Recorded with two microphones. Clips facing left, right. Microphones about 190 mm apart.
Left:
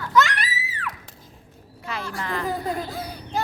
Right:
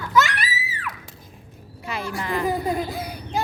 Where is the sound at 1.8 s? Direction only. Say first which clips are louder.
Right 2 dB; 10° right (ahead or behind).